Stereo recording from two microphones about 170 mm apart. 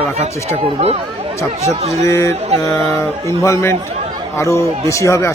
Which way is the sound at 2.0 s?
15° left (ahead or behind).